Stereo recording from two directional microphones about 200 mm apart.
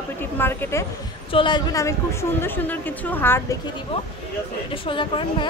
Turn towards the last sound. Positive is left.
turn(degrees=25)  # may be behind; listen again after turning